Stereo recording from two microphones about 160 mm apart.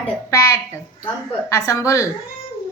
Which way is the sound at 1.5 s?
20° left (ahead or behind).